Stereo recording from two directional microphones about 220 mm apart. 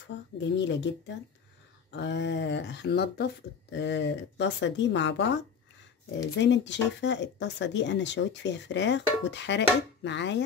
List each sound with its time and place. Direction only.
0.4 s speech: 55° left (ahead or behind)
6.4 s speech: 55° left (ahead or behind)